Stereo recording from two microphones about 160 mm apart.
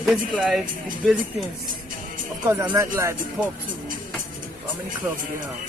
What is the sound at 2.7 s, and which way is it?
Speech, 20° right (ahead or behind).